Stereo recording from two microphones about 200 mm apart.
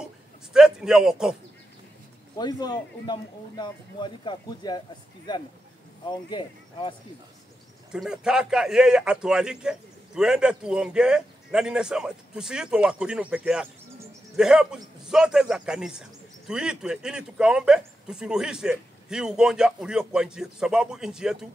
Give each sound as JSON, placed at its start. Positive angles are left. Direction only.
{"t": 0.0, "sound": "a sound", "side_deg": -5}
{"t": 2.3, "sound": "speech", "side_deg": 20}
{"t": 7.9, "sound": "a man's voice", "side_deg": -5}